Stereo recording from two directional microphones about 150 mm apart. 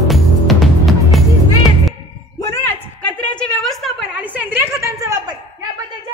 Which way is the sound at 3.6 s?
Centre (ahead or behind).